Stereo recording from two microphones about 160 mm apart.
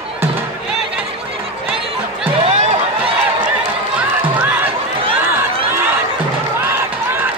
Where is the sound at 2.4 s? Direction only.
35° right (ahead or behind).